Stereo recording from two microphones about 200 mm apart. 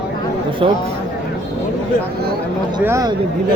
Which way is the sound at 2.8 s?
15° right (ahead or behind).